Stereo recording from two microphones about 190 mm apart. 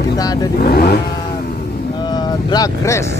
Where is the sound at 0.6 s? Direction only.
55° left (ahead or behind).